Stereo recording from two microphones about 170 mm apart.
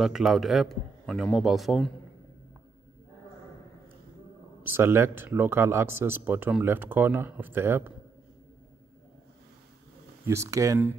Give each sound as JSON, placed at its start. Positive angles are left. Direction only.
{"t": 0.0, "sound": "a man's voice", "side_deg": 0}
{"t": 4.6, "sound": "speech", "side_deg": -15}
{"t": 10.2, "sound": "speech", "side_deg": -15}